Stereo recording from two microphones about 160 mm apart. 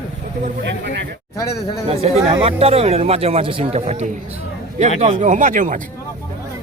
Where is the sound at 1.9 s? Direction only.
40° right (ahead or behind); by 5.8 s 55° right (ahead or behind).